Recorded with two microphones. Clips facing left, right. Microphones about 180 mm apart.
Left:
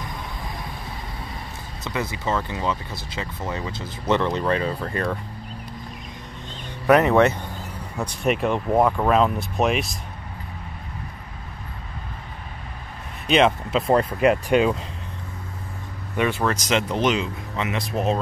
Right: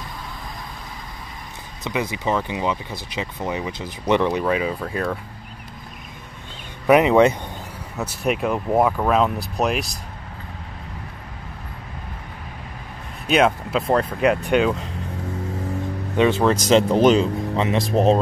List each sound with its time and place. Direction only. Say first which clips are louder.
1.9 s speech: right 3 dB; 15° right (ahead or behind)
6.9 s speech: right 2 dB; 15° right (ahead or behind)
8.0 s speech: even; 5° right (ahead or behind)
13.3 s speech: even; 5° right (ahead or behind)
16.2 s speech: right 5 dB; 25° right (ahead or behind)